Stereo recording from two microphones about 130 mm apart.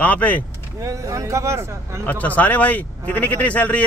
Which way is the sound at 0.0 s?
10° left (ahead or behind).